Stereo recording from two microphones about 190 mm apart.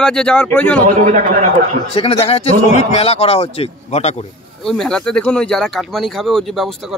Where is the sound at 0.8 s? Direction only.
45° right (ahead or behind).